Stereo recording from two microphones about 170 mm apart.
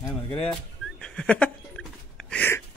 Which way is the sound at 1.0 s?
5° left (ahead or behind).